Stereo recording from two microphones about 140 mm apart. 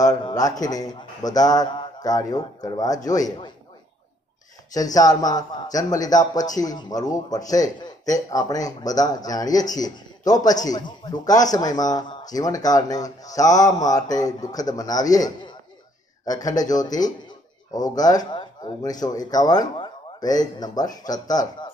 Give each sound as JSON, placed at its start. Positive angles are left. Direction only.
{"t": 0.0, "sound": "speech", "side_deg": 25}
{"t": 4.7, "sound": "speech", "side_deg": 25}